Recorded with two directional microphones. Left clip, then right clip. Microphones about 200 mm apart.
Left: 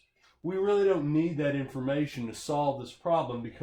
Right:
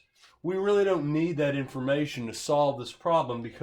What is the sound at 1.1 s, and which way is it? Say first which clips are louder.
Speech: right 2 dB; 30° right (ahead or behind).